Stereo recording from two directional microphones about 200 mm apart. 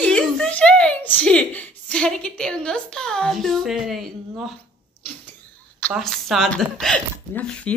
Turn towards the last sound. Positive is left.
turn(degrees=5)  # may be behind; listen again after turning